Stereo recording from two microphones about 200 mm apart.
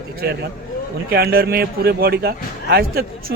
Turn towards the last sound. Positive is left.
turn(degrees=-50)  # may be behind; listen again after turning